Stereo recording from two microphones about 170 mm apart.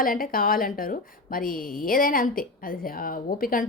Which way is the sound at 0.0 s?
55° left (ahead or behind).